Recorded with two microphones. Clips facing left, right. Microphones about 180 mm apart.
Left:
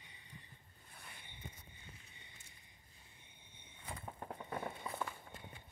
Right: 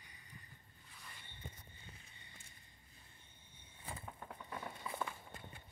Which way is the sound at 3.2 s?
20° left (ahead or behind).